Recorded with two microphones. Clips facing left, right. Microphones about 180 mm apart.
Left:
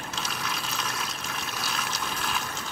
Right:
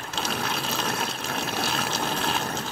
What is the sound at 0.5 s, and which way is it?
Water, 30° right (ahead or behind).